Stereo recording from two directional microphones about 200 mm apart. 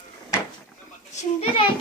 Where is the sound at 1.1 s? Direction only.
30° left (ahead or behind).